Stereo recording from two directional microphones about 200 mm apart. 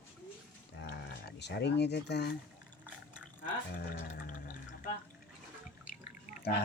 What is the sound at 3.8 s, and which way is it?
Music, 40° left (ahead or behind).